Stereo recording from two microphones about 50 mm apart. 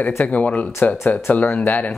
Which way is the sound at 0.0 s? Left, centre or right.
Left.